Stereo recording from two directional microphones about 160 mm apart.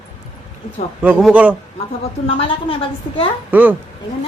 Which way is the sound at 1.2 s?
5° right (ahead or behind).